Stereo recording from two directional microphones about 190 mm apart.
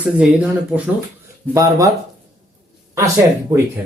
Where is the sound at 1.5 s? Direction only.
15° right (ahead or behind).